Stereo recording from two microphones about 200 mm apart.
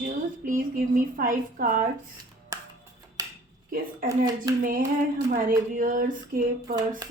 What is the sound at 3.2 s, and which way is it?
Dishes, 15° right (ahead or behind).